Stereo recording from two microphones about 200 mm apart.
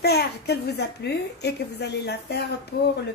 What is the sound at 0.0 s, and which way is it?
A woman's voice, 55° left (ahead or behind).